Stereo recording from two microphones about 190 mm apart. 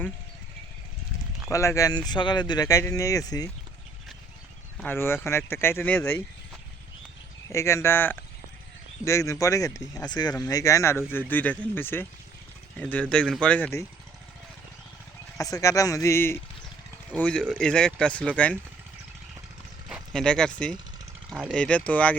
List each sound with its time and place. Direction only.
1.5 s speech: 15° left (ahead or behind)
4.8 s speech: 10° left (ahead or behind)
7.5 s speech: 15° left (ahead or behind)
15.4 s speech: 15° left (ahead or behind)
19.9 s speech: 5° left (ahead or behind)
21.2 s a sound: 5° right (ahead or behind)
21.5 s speech: 5° left (ahead or behind)